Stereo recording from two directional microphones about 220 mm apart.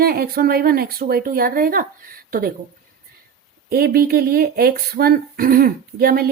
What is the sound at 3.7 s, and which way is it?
Speech, 45° right (ahead or behind).